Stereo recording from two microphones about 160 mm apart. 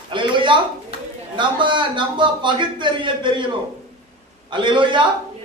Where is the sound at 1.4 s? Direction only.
30° right (ahead or behind).